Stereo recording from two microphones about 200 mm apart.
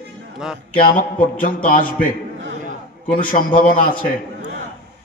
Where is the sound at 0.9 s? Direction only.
45° left (ahead or behind).